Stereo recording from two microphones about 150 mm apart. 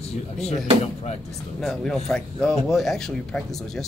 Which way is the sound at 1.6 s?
Centre (ahead or behind).